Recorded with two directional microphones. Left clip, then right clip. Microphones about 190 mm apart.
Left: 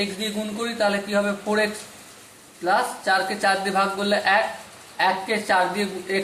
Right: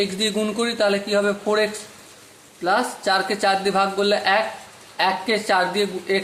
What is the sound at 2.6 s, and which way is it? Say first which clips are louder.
Speech: right 1 dB; 50° right (ahead or behind).